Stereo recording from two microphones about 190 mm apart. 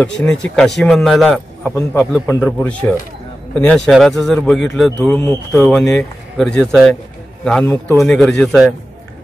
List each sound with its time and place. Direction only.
0.0 s a man's voice: 5° left (ahead or behind)
2.2 s a man's voice: 10° left (ahead or behind)